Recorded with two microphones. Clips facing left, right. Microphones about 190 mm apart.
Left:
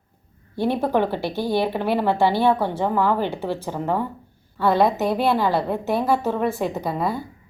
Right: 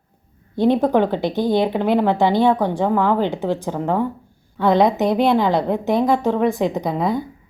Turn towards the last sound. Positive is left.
turn(degrees=-15)  # may be behind; listen again after turning